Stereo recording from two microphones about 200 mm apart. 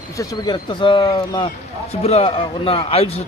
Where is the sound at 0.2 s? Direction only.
20° left (ahead or behind).